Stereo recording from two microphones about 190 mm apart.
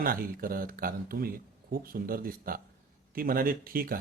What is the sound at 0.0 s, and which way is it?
A man's voice, 50° right (ahead or behind).